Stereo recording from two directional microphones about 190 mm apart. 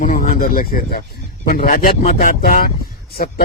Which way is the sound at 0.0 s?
45° left (ahead or behind).